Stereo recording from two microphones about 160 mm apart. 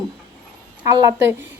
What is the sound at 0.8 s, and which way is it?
Speech, 20° right (ahead or behind).